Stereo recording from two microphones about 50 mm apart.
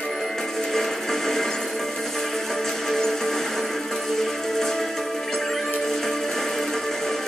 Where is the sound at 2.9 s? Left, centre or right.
Centre.